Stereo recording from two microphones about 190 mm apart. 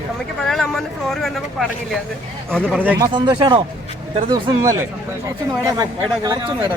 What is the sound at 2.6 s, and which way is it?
Speech, 10° right (ahead or behind).